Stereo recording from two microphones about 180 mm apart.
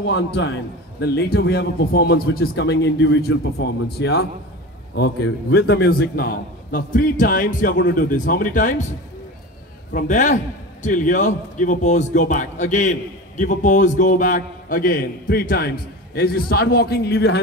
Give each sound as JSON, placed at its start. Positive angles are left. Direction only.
{"t": 0.0, "sound": "a man's voice", "side_deg": 75}
{"t": 1.0, "sound": "a man's voice", "side_deg": 65}
{"t": 9.9, "sound": "a man's voice", "side_deg": 45}